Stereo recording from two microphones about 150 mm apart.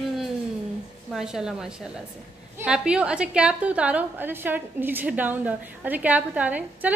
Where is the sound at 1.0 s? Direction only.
5° right (ahead or behind).